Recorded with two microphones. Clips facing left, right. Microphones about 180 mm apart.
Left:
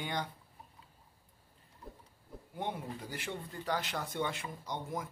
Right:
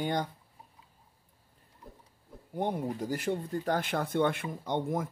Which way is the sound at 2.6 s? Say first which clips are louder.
Right 8 dB; 45° right (ahead or behind).